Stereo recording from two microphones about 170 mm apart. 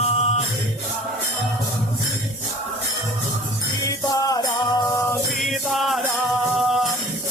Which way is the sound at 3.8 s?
20° left (ahead or behind).